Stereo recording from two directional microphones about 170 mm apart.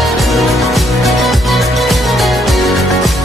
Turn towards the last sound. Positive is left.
turn(degrees=0)  # may be behind; listen again after turning